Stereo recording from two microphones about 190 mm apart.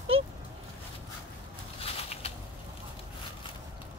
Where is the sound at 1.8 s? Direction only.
30° left (ahead or behind).